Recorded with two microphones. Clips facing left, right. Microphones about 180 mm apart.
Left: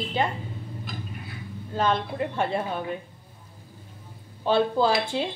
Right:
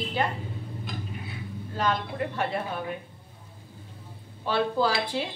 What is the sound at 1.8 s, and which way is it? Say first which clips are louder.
Speech: left 3 dB; 30° left (ahead or behind).